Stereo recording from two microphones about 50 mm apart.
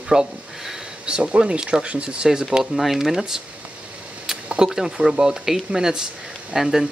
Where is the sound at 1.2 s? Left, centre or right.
Right; by 3.3 s centre.